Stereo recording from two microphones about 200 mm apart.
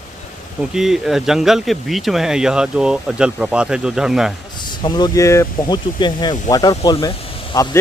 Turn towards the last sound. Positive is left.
turn(degrees=20)  # may be behind; listen again after turning